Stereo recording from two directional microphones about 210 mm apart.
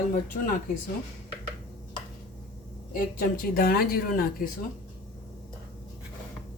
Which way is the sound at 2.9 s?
45° left (ahead or behind).